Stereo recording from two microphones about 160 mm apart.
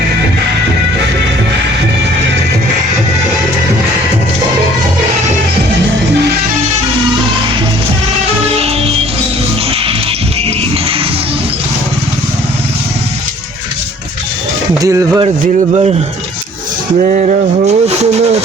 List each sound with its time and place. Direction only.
8.4 s music: 40° right (ahead or behind)
14.8 s speech: 20° right (ahead or behind)
17.1 s speech: 50° right (ahead or behind)